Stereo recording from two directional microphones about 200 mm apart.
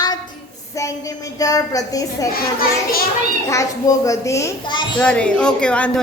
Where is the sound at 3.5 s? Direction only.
15° left (ahead or behind).